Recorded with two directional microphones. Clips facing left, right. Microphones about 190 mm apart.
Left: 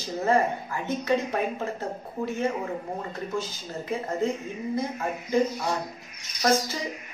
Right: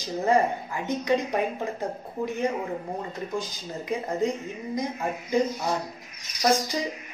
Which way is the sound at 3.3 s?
15° right (ahead or behind).